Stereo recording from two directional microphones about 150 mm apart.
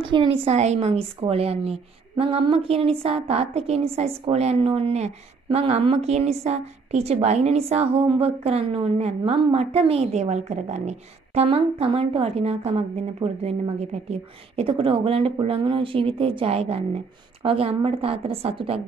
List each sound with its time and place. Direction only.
0.1 s a woman's voice: 35° right (ahead or behind)